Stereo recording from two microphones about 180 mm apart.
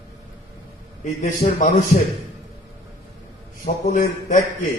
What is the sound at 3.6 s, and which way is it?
Speech, 45° left (ahead or behind).